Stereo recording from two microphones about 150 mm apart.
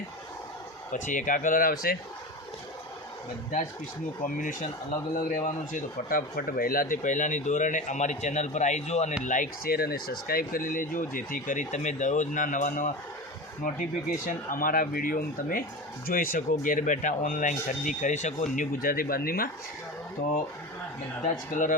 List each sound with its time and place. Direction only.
0.9 s speech: 60° left (ahead or behind); by 2.0 s 90° left
4.2 s speech: 60° left (ahead or behind)
14.3 s speech: 65° left (ahead or behind)
21.2 s speech: 55° left (ahead or behind)